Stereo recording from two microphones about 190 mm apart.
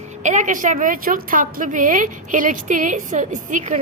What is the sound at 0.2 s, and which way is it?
A woman's voice, 40° right (ahead or behind).